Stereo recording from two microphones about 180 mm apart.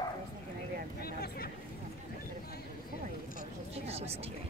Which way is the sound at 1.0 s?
60° left (ahead or behind).